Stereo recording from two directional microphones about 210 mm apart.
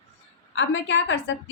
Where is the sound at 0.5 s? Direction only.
65° left (ahead or behind).